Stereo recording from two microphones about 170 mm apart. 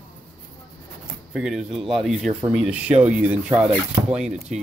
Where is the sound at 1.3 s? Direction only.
5° right (ahead or behind).